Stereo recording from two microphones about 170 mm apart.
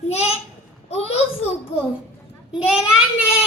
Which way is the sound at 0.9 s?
35° left (ahead or behind).